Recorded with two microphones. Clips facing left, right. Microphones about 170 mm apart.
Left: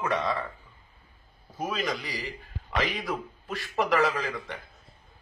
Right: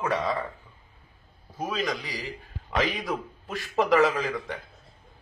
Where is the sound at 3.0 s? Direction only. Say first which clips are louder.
Right 1 dB; 20° right (ahead or behind).